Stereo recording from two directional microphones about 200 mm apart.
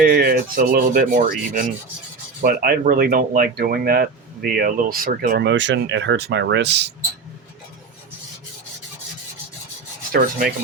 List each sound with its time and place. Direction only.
0.0 s speech: 50° right (ahead or behind)
10.1 s rub: 45° right (ahead or behind)